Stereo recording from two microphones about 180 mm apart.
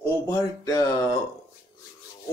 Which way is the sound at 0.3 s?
20° left (ahead or behind).